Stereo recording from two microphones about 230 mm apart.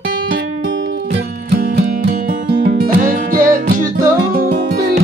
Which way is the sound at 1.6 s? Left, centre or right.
Right.